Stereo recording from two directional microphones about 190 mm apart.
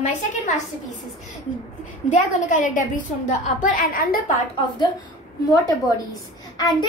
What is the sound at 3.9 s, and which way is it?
Speech, 50° left (ahead or behind).